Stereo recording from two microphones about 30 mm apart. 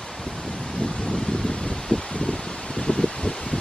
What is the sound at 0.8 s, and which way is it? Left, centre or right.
Rustling leaves, left.